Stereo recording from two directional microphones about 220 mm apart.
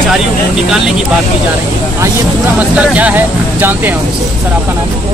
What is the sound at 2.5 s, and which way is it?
Speech, 5° right (ahead or behind).